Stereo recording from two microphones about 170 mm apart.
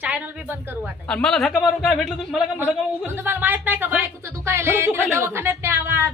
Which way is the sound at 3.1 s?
10° right (ahead or behind).